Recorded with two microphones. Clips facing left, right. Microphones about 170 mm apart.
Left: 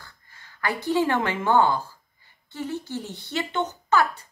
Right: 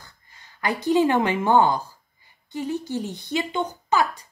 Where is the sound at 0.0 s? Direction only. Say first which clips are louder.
Left 1 dB; 20° right (ahead or behind).